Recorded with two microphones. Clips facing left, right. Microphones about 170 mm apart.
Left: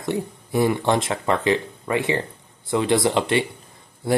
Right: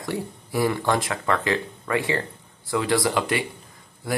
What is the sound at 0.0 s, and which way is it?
Speech, 25° left (ahead or behind).